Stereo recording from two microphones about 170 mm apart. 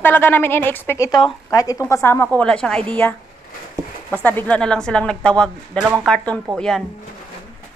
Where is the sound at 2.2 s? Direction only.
5° left (ahead or behind).